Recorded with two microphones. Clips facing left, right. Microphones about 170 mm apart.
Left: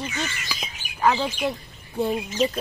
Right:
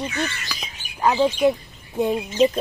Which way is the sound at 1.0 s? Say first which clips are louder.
Right 3 dB; 15° right (ahead or behind).